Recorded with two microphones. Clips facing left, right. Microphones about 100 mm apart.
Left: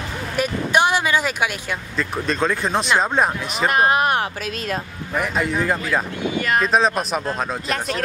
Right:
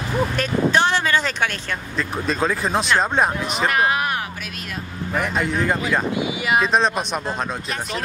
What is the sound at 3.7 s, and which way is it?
Speech, 30° left (ahead or behind).